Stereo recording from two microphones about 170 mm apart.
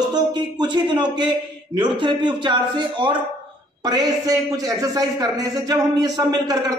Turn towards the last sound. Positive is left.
turn(degrees=-20)  # may be behind; listen again after turning